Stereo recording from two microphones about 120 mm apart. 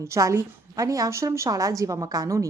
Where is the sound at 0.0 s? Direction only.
25° right (ahead or behind).